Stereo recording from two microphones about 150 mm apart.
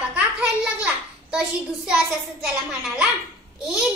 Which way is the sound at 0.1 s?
10° right (ahead or behind).